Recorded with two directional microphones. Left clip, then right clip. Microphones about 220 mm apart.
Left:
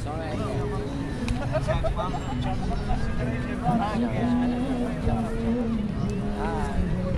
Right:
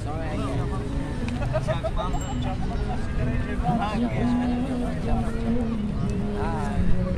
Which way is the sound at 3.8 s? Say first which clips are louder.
Even; 10° right (ahead or behind).